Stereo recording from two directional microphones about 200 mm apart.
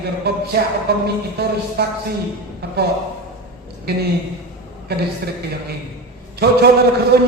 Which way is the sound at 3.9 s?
50° right (ahead or behind).